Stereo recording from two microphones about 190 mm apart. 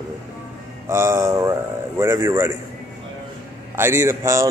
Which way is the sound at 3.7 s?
15° right (ahead or behind).